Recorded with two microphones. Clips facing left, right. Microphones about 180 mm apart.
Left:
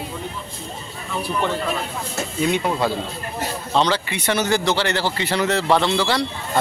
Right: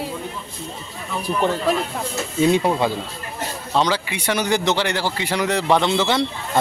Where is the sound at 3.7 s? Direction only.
10° right (ahead or behind).